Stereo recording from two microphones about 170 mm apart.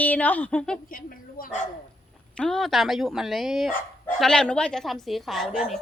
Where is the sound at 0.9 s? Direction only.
55° left (ahead or behind).